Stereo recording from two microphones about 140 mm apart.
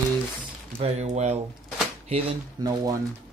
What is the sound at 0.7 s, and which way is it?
Speech, 50° right (ahead or behind).